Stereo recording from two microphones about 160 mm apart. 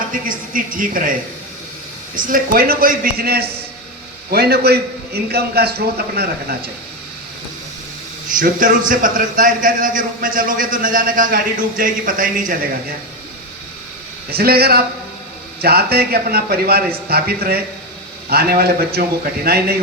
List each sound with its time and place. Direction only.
0.1 s a man's voice: 60° right (ahead or behind)
2.1 s a man's voice: 60° right (ahead or behind); by 6.7 s 80° right
8.4 s a man's voice: 60° right (ahead or behind)
14.3 s a man's voice: 75° right (ahead or behind)